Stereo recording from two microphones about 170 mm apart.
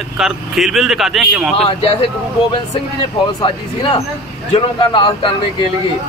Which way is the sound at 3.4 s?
30° left (ahead or behind).